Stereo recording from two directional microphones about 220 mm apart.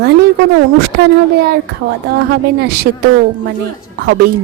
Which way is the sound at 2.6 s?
45° right (ahead or behind).